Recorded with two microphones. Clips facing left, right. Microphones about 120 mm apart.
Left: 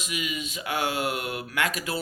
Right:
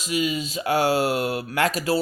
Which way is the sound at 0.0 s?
35° right (ahead or behind).